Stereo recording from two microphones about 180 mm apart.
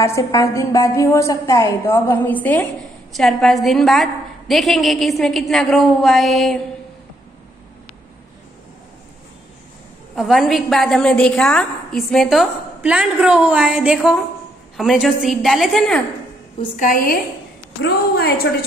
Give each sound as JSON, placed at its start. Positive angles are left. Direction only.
{"t": 0.0, "sound": "a woman's voice", "side_deg": 15}
{"t": 10.1, "sound": "a woman's voice", "side_deg": 0}
{"t": 16.7, "sound": "a woman's voice", "side_deg": 50}
{"t": 17.8, "sound": "a woman's voice", "side_deg": 60}